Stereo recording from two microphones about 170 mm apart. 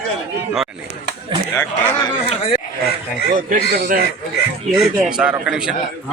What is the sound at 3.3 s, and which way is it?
Speech, 55° right (ahead or behind).